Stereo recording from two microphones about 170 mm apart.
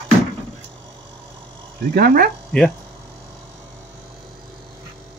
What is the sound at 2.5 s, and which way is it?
Speech, 5° left (ahead or behind).